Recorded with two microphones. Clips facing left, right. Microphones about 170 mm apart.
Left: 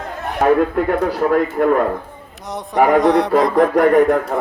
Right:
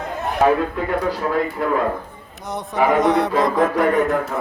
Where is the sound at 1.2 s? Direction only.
55° left (ahead or behind).